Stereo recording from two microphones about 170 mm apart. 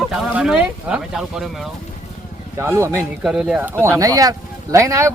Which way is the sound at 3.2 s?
5° right (ahead or behind).